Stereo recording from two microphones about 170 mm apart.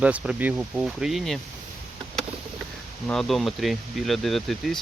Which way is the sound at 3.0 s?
Centre (ahead or behind).